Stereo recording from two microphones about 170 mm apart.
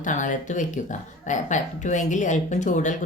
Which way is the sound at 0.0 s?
45° left (ahead or behind).